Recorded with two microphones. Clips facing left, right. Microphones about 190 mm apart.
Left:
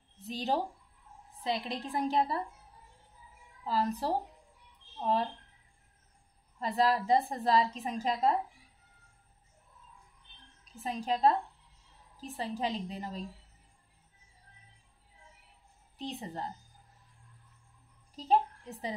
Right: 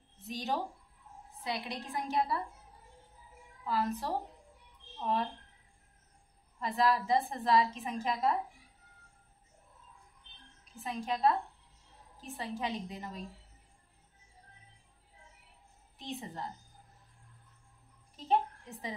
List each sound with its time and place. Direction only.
0.2 s a woman's voice: 35° left (ahead or behind)
3.6 s a woman's voice: 30° left (ahead or behind)
6.6 s a woman's voice: 30° left (ahead or behind)
10.8 s a woman's voice: 35° left (ahead or behind)
16.0 s a woman's voice: 35° left (ahead or behind)
18.3 s a woman's voice: 35° left (ahead or behind)